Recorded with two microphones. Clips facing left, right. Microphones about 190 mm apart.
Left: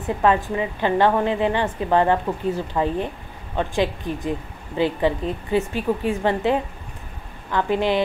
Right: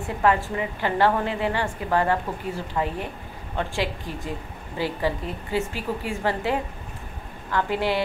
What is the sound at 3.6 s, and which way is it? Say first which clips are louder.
A woman's voice: left 5 dB; 20° left (ahead or behind).